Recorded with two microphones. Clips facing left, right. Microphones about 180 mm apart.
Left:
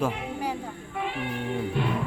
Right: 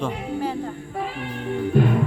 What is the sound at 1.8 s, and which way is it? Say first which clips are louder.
Music: right 11 dB; 45° right (ahead or behind).